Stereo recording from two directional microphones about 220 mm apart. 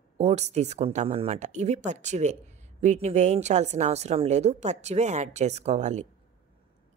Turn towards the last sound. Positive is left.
turn(degrees=-30)  # may be behind; listen again after turning